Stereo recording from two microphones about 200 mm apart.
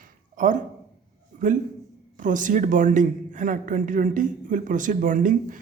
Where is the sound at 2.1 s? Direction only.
40° right (ahead or behind).